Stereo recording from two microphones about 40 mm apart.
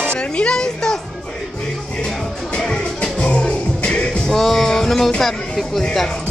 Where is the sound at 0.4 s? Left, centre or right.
Centre.